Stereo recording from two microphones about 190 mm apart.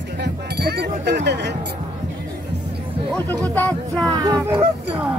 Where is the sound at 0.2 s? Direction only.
60° right (ahead or behind).